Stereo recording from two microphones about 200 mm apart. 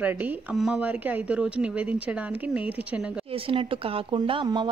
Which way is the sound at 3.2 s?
25° right (ahead or behind).